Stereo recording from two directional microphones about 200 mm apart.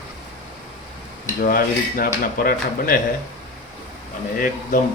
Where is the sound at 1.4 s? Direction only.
45° left (ahead or behind).